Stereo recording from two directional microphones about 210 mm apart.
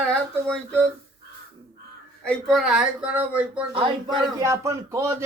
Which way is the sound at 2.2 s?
Centre (ahead or behind).